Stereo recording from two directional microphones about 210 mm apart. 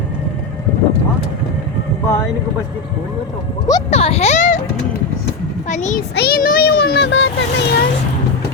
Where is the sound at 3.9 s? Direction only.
30° left (ahead or behind).